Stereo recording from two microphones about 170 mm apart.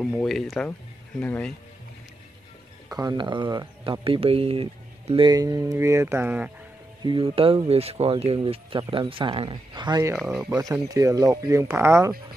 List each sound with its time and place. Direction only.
0.0 s speech: 5° left (ahead or behind)
2.9 s speech: 20° right (ahead or behind)
7.0 s speech: 30° right (ahead or behind)
10.1 s speech: 5° right (ahead or behind)
10.5 s speech: 20° right (ahead or behind)